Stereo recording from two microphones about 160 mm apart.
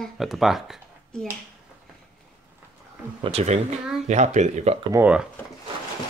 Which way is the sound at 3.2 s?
40° right (ahead or behind).